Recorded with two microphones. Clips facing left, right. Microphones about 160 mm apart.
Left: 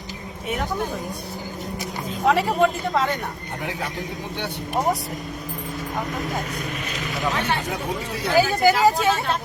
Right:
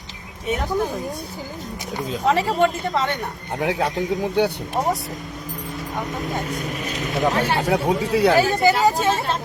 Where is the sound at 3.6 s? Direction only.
85° right.